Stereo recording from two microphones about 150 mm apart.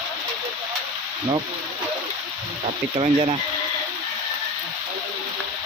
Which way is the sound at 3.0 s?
45° right (ahead or behind).